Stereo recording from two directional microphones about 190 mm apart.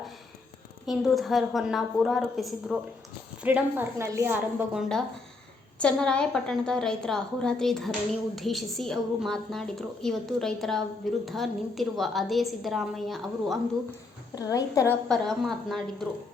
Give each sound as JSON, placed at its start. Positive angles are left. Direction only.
{"t": 0.9, "sound": "a woman's voice", "side_deg": 0}
{"t": 14.3, "sound": "a woman's voice", "side_deg": 20}
{"t": 15.1, "sound": "a woman's voice", "side_deg": 0}